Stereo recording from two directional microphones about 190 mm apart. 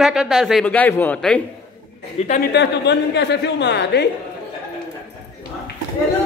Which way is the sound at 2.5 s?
65° left (ahead or behind).